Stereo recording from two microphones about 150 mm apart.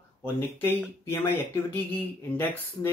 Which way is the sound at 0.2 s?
15° left (ahead or behind).